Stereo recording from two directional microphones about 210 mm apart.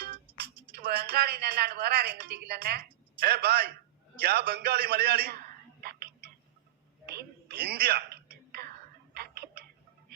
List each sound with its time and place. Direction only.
0.8 s a woman's voice: 45° right (ahead or behind)
5.8 s a sound: 50° right (ahead or behind)
7.0 s whispering: 50° right (ahead or behind)
9.1 s tick-tock: 50° right (ahead or behind)